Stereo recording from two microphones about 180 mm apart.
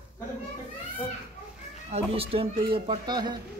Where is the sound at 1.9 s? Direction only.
35° right (ahead or behind).